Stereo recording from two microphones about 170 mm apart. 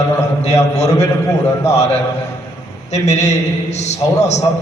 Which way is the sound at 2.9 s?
40° left (ahead or behind).